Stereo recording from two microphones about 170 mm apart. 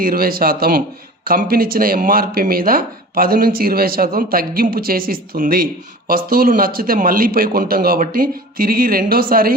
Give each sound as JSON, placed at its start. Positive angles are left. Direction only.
{"t": 0.0, "sound": "speech", "side_deg": -60}